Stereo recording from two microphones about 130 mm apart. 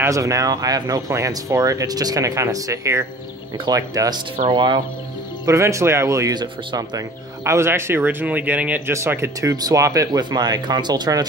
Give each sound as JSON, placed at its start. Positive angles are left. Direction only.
{"t": 0.0, "sound": "speech", "side_deg": -25}
{"t": 7.4, "sound": "speech", "side_deg": -20}